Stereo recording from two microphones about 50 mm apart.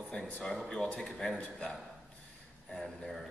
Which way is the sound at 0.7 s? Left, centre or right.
Centre.